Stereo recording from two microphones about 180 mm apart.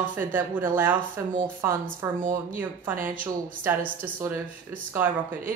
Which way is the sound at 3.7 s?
15° right (ahead or behind).